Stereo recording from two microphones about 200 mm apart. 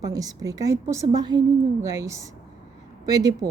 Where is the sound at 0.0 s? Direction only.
15° right (ahead or behind).